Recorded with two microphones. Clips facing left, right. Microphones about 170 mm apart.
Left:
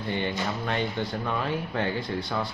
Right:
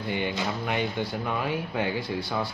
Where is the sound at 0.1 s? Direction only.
10° right (ahead or behind).